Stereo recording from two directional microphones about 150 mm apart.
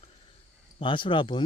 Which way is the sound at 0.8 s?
35° left (ahead or behind).